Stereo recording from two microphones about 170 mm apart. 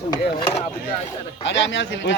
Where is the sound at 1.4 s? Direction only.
90° left.